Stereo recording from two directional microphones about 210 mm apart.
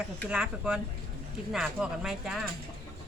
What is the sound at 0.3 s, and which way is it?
Speech, 5° right (ahead or behind).